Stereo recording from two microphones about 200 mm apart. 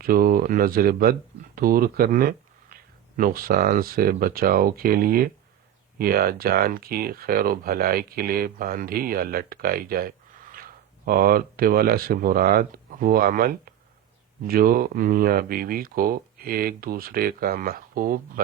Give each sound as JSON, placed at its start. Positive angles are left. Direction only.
{"t": 0.0, "sound": "speech", "side_deg": -45}